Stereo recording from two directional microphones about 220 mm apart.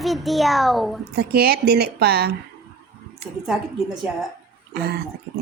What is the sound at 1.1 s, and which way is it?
Speech, 45° right (ahead or behind).